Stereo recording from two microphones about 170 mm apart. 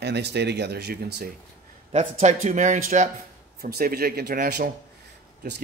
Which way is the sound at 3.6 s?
60° right (ahead or behind).